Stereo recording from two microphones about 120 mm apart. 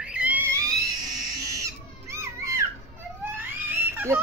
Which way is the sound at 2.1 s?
25° right (ahead or behind).